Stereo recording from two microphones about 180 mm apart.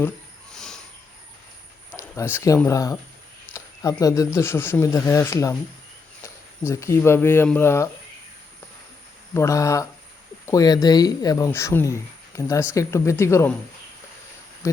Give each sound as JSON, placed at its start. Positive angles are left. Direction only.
{"t": 0.5, "sound": "a sound", "side_deg": 5}
{"t": 2.0, "sound": "speech", "side_deg": 15}
{"t": 4.0, "sound": "speech", "side_deg": 20}
{"t": 9.3, "sound": "speech", "side_deg": 15}